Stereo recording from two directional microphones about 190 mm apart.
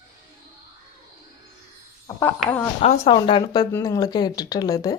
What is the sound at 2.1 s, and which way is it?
Speech, 10° left (ahead or behind).